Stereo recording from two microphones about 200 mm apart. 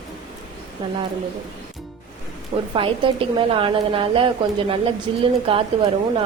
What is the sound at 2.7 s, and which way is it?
A woman's voice, 25° right (ahead or behind).